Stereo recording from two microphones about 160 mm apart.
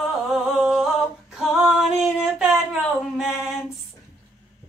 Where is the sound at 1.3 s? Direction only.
Centre (ahead or behind).